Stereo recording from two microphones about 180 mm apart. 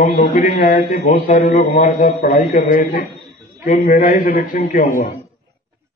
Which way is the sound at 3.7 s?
40° left (ahead or behind).